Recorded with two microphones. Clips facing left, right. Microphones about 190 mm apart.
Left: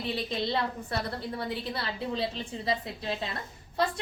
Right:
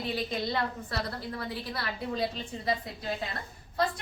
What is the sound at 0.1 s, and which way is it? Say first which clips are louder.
A woman's voice: left 2 dB; 25° left (ahead or behind).